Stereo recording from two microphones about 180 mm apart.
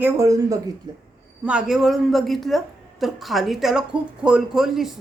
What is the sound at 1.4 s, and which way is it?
A woman's voice, 5° right (ahead or behind).